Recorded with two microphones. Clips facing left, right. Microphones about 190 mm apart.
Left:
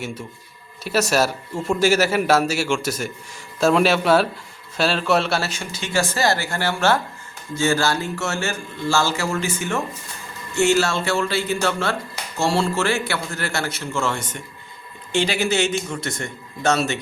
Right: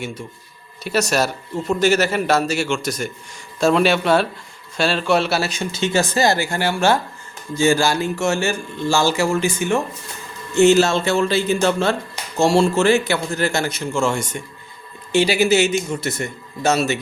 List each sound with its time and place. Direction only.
0.0 s a man's voice: 5° left (ahead or behind)
5.4 s a man's voice: 15° right (ahead or behind)